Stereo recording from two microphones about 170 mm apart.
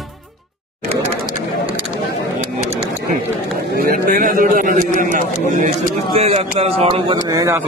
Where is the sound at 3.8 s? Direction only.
55° right (ahead or behind).